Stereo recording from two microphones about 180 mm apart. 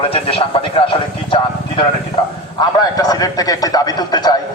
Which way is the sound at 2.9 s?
20° left (ahead or behind).